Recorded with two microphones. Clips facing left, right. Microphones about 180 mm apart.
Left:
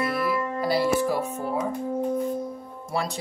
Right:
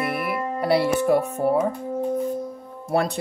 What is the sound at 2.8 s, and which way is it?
Speech, 55° right (ahead or behind).